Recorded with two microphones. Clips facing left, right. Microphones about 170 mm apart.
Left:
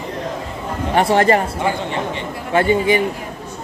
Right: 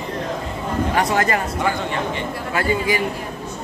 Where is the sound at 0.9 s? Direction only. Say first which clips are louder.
Left 8 dB; 30° left (ahead or behind).